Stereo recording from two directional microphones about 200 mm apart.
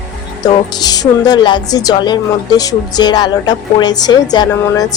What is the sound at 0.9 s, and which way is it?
A woman's voice, 20° left (ahead or behind).